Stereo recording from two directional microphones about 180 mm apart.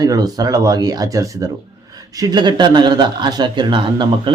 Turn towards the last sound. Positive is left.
turn(degrees=-25)  # may be behind; listen again after turning